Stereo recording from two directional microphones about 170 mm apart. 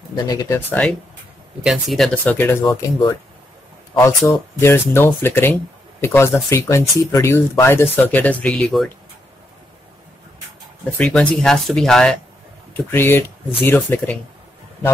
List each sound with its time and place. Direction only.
0.1 s speech: 20° left (ahead or behind)
1.6 s speech: centre (ahead or behind); by 3.2 s 20° left (ahead or behind)
4.6 s speech: 15° left (ahead or behind)
11.0 s speech: 5° left (ahead or behind)
12.7 s speech: 15° left (ahead or behind)